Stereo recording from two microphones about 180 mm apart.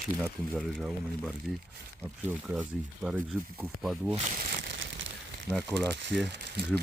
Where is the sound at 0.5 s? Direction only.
Centre (ahead or behind).